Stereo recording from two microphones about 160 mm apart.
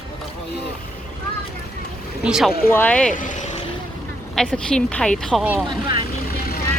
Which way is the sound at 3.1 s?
55° left (ahead or behind).